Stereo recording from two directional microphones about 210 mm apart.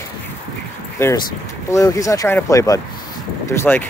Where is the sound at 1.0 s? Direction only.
10° left (ahead or behind).